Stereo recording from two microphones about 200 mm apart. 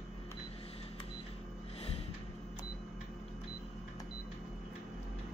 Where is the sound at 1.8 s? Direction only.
30° left (ahead or behind).